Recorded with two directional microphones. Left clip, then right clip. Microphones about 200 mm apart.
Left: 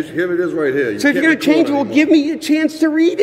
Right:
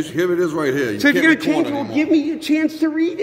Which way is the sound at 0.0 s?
55° right (ahead or behind).